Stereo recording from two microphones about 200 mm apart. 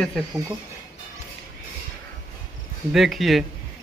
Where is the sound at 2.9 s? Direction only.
Centre (ahead or behind).